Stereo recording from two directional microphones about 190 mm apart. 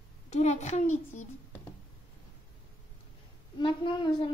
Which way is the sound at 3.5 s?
25° left (ahead or behind).